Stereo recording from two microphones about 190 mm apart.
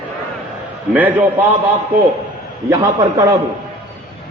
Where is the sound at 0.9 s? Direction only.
10° right (ahead or behind).